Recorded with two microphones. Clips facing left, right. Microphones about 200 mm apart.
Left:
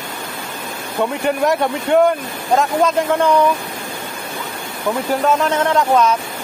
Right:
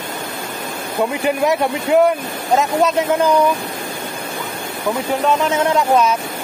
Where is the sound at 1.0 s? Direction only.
5° right (ahead or behind).